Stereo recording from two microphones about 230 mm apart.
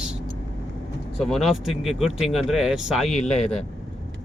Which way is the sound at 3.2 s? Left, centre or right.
Left.